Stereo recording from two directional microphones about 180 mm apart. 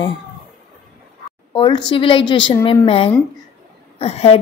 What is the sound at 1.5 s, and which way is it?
A woman's voice, 25° left (ahead or behind).